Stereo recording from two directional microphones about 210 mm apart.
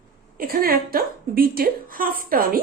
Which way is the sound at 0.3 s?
45° right (ahead or behind).